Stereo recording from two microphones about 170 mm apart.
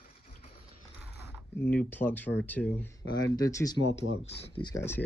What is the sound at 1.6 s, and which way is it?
Speech, 10° left (ahead or behind).